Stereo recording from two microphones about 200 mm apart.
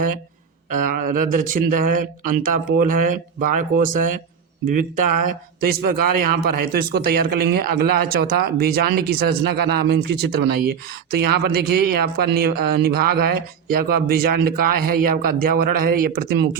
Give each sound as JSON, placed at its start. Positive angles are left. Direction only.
{"t": 0.7, "sound": "speech", "side_deg": -40}